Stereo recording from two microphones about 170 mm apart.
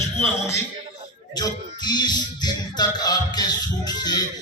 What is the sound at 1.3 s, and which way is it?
Music, 25° left (ahead or behind).